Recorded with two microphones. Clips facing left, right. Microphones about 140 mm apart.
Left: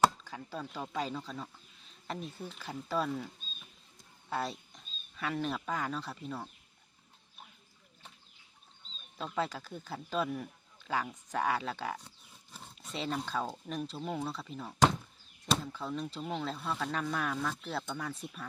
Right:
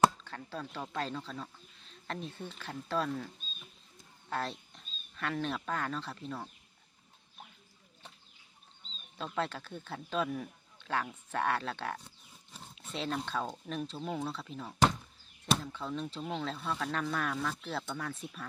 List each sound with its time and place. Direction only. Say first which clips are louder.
0.3 s speech: even; 5° left (ahead or behind)
9.1 s speech: left 1 dB; centre (ahead or behind)